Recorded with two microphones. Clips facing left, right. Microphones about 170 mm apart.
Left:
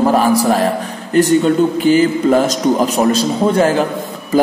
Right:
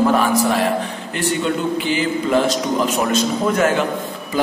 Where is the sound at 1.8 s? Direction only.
45° left (ahead or behind).